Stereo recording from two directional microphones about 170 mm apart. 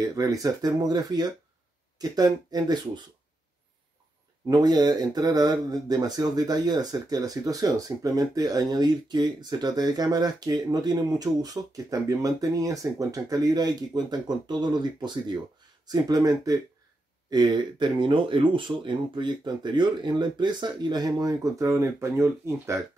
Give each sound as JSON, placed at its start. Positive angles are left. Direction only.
{"t": 0.0, "sound": "speech", "side_deg": -20}
{"t": 4.5, "sound": "speech", "side_deg": -25}